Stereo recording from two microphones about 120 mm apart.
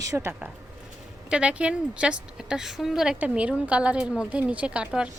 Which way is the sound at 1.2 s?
10° right (ahead or behind).